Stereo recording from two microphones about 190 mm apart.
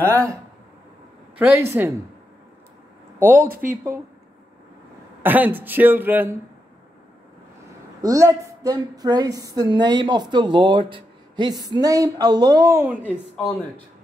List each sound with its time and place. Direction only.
0.0 s speech: 15° right (ahead or behind)
1.4 s speech: 10° right (ahead or behind)
3.2 s speech: 10° right (ahead or behind)
3.4 s speech: 50° right (ahead or behind)
5.2 s speech: 10° right (ahead or behind)
8.0 s a woman's voice: 20° right (ahead or behind)
12.8 s speech: 10° right (ahead or behind)